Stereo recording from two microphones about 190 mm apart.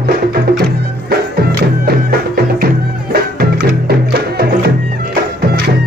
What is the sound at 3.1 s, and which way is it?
Music, 55° right (ahead or behind).